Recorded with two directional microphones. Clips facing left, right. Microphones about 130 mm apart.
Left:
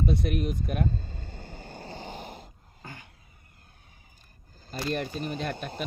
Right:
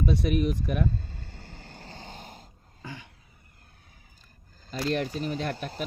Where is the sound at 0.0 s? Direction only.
75° right (ahead or behind).